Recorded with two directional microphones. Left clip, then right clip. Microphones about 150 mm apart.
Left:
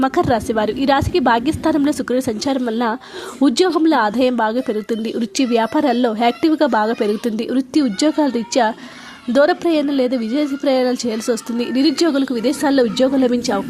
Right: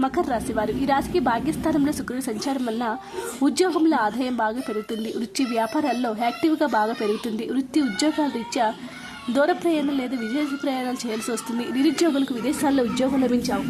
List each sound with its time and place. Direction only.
0.0 s a woman's voice: 40° left (ahead or behind)